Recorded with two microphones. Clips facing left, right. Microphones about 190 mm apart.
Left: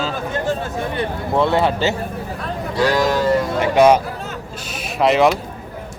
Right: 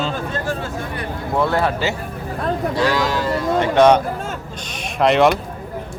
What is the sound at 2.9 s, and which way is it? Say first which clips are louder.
Speech: left 3 dB; 45° left (ahead or behind).